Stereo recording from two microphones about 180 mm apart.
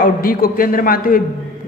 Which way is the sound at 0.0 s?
55° left (ahead or behind).